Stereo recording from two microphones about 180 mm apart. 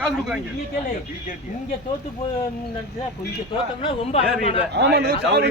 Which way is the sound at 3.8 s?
30° left (ahead or behind).